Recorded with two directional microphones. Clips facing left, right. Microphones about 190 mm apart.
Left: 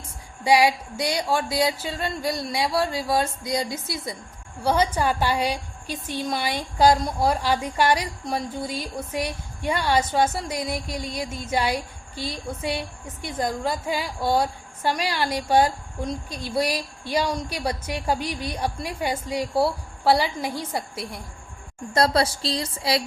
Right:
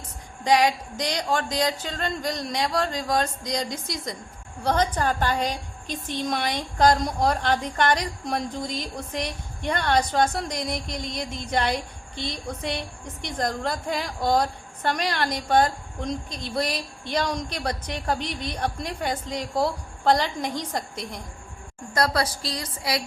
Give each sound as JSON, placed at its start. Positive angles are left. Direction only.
{"t": 0.4, "sound": "a woman's voice", "side_deg": 10}
{"t": 21.9, "sound": "a woman's voice", "side_deg": 25}